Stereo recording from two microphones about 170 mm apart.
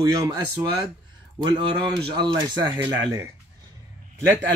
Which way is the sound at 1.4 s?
25° right (ahead or behind).